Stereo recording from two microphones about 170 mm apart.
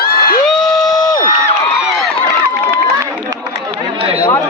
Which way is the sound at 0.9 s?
25° left (ahead or behind).